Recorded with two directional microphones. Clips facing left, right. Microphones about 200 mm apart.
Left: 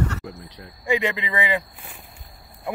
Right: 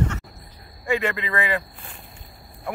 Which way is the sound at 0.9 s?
15° left (ahead or behind).